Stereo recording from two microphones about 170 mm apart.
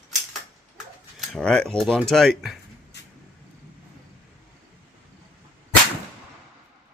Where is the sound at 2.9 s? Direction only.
90° left.